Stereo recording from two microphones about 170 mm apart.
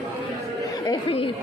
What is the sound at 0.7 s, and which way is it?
Chatter, 20° left (ahead or behind).